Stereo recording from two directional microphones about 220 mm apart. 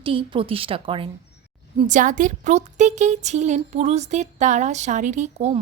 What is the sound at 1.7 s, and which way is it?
A woman's voice, 35° right (ahead or behind).